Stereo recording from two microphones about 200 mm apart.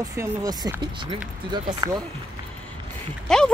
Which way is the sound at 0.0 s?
15° right (ahead or behind).